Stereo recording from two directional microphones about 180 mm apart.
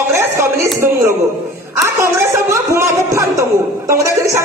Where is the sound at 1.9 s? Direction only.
15° right (ahead or behind).